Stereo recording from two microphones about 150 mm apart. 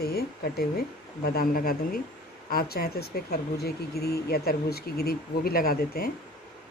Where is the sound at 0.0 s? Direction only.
90° left; by 2.0 s 75° left (ahead or behind).